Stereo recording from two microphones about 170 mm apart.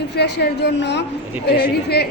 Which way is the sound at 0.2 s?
75° left (ahead or behind).